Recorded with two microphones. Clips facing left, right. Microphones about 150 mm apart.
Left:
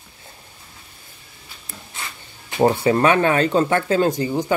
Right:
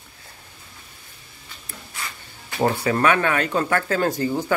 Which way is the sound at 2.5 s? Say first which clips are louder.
Left 5 dB; 25° left (ahead or behind).